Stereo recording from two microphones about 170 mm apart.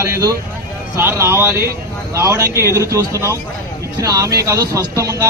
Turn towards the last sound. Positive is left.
turn(degrees=-20)  # may be behind; listen again after turning